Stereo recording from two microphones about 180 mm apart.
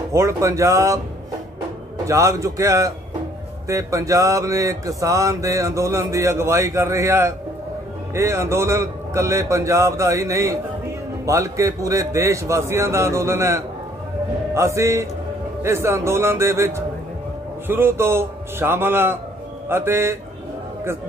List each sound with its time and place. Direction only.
0.1 s music: 15° right (ahead or behind)
2.0 s music: 15° right (ahead or behind)